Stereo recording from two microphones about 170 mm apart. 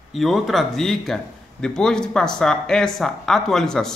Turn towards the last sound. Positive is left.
turn(degrees=5)  # may be behind; listen again after turning